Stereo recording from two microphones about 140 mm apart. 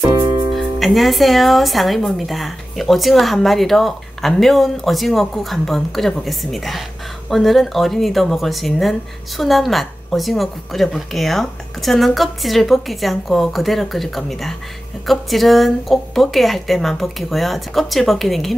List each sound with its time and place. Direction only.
0.2 s music: 35° right (ahead or behind)
0.6 s speech: centre (ahead or behind)